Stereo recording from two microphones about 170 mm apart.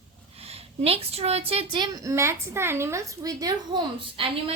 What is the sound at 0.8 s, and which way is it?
A woman's voice, 35° right (ahead or behind).